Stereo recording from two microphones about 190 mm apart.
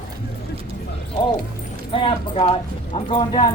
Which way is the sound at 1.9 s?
30° left (ahead or behind).